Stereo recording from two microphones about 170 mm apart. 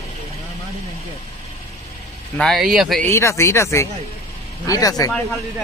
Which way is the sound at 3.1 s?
15° left (ahead or behind).